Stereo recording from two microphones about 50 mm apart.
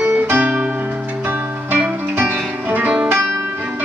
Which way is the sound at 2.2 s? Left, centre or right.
Right.